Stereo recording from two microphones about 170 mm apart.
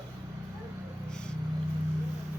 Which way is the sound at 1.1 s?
5° left (ahead or behind).